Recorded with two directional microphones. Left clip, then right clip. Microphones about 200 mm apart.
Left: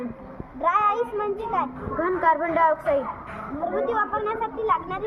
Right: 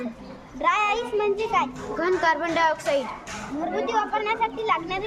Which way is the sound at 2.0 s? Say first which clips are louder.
Left 1 dB; 35° right (ahead or behind).